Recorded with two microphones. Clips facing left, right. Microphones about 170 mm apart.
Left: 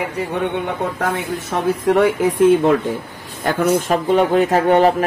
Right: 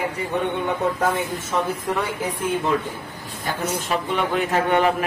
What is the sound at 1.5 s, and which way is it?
Speech, 90° left.